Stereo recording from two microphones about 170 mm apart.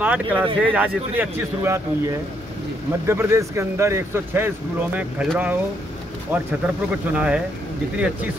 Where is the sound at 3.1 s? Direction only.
15° right (ahead or behind).